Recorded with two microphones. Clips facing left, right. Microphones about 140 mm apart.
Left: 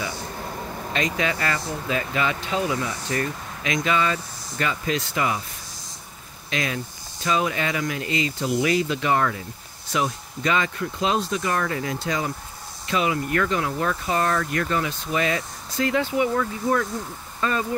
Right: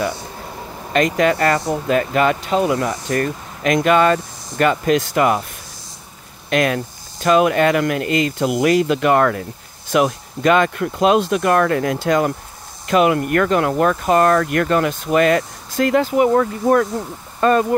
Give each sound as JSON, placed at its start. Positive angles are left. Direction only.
{"t": 0.9, "sound": "speech", "side_deg": -50}
{"t": 6.5, "sound": "speech", "side_deg": -60}